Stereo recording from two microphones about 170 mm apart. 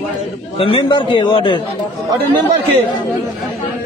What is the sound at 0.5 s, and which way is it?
A man's voice, 30° left (ahead or behind).